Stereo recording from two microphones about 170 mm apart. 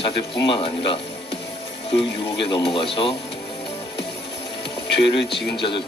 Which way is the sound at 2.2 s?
30° left (ahead or behind).